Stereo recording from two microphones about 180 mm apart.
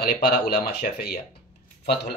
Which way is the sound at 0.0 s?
60° left (ahead or behind).